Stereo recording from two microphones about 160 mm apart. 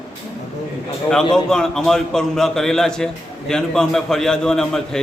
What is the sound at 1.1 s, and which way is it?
A man's voice, 5° left (ahead or behind).